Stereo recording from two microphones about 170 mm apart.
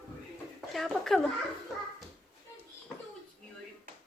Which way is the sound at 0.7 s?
Centre (ahead or behind).